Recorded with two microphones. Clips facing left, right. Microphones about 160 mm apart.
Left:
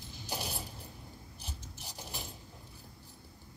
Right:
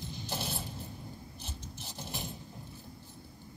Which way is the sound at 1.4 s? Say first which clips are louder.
Even; 10° left (ahead or behind).